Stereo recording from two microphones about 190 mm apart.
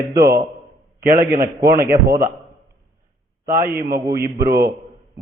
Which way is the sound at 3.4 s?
50° right (ahead or behind).